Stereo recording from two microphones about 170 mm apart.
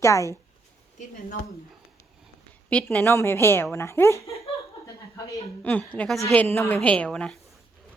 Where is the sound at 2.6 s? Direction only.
5° left (ahead or behind).